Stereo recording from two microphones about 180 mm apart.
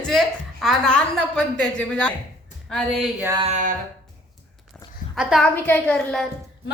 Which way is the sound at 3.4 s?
40° right (ahead or behind).